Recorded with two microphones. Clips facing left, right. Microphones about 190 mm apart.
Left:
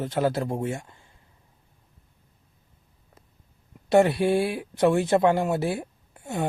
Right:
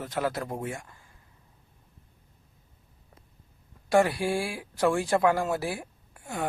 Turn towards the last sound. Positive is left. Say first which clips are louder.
# left 4 dB
turn(degrees=25)  # may be behind; listen again after turning